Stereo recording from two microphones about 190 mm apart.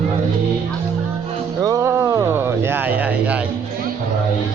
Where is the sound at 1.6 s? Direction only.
15° right (ahead or behind).